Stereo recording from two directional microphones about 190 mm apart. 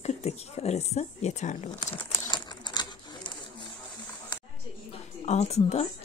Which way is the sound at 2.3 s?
25° left (ahead or behind).